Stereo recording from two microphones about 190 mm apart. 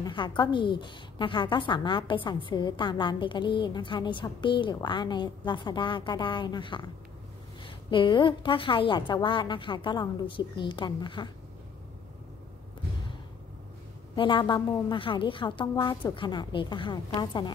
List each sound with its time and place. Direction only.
0.0 s a woman's voice: 25° left (ahead or behind)
14.1 s a woman's voice: 25° left (ahead or behind)